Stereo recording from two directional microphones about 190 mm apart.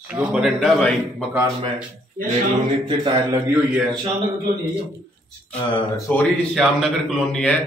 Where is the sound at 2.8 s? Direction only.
25° right (ahead or behind).